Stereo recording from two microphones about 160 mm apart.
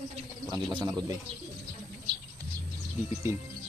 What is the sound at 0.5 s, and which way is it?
Speech, 30° right (ahead or behind).